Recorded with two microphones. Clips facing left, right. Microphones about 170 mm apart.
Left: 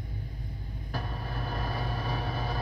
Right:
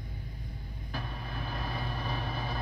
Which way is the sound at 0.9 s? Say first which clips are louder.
Left 3 dB; 40° left (ahead or behind).